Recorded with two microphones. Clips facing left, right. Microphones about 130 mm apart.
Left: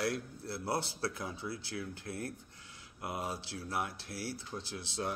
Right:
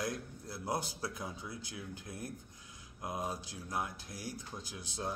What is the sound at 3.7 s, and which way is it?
Speech, 15° right (ahead or behind).